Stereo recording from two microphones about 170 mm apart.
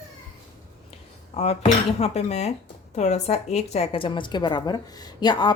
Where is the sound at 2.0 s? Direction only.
40° left (ahead or behind).